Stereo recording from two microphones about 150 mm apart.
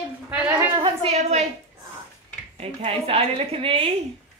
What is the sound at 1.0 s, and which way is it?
Speech, 45° right (ahead or behind).